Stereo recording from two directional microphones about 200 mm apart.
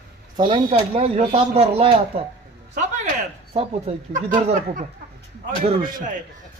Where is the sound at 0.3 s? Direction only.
25° right (ahead or behind).